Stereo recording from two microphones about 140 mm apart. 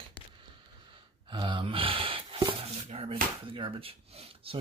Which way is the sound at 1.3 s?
35° right (ahead or behind).